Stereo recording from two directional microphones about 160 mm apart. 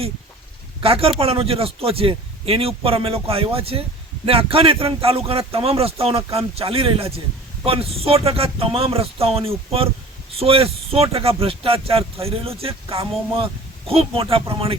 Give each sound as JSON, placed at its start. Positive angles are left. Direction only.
{"t": 0.8, "sound": "speech", "side_deg": -35}